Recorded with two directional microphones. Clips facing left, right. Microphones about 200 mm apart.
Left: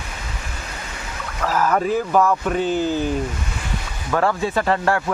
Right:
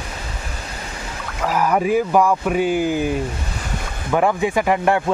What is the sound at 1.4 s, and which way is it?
Speech, 10° right (ahead or behind).